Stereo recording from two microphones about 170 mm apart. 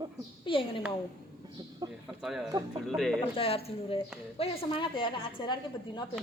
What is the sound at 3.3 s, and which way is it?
A woman's voice, 35° left (ahead or behind).